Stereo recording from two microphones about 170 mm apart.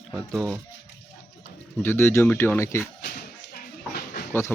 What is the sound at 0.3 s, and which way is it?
Speech, 10° left (ahead or behind).